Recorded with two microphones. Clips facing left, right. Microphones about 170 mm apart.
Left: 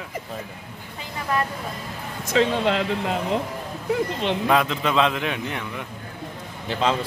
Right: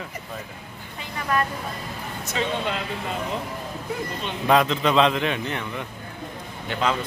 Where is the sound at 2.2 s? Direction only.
90° left.